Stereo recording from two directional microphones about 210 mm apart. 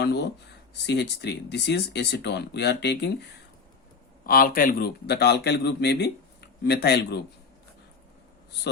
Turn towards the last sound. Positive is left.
turn(degrees=50)  # may be behind; listen again after turning